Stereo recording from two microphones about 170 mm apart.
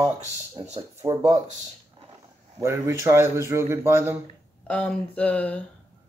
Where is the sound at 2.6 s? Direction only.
15° right (ahead or behind).